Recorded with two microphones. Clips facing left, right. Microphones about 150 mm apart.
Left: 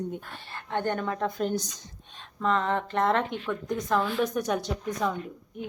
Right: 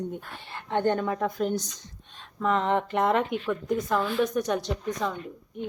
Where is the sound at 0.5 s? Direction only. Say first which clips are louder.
Right 4 dB; 15° right (ahead or behind).